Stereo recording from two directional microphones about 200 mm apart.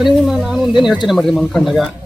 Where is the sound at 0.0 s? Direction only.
Centre (ahead or behind).